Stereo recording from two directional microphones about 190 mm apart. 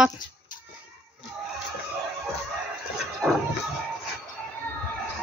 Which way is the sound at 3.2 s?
5° right (ahead or behind).